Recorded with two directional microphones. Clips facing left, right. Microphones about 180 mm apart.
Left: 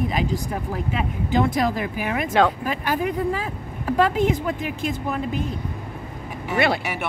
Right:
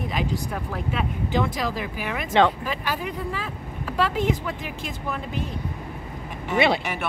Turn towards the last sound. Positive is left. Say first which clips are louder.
# even
turn(degrees=10)  # may be behind; listen again after turning